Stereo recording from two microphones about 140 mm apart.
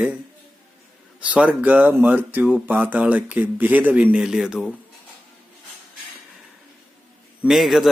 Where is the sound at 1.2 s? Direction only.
10° right (ahead or behind).